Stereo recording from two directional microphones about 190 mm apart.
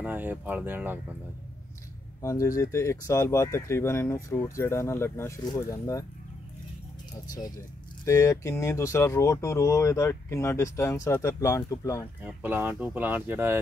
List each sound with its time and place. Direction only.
0.0 s speech: 10° right (ahead or behind)
2.2 s speech: 15° left (ahead or behind)
8.0 s speech: 15° left (ahead or behind)
12.2 s speech: 10° right (ahead or behind)